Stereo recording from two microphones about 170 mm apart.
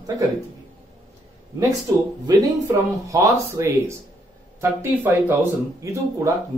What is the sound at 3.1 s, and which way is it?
Speech, 15° right (ahead or behind).